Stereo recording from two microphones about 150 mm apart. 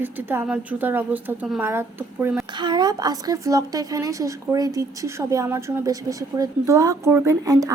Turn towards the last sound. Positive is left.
turn(degrees=-20)  # may be behind; listen again after turning